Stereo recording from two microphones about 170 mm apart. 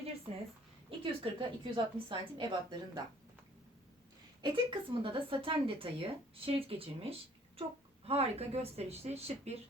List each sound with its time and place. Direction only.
0.9 s a woman's voice: 30° right (ahead or behind)
4.4 s a woman's voice: 30° right (ahead or behind)